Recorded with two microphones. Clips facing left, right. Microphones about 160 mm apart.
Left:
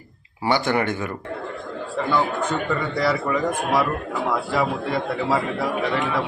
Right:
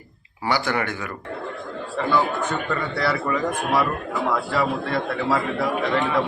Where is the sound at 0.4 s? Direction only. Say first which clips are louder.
Left 3 dB; 20° left (ahead or behind).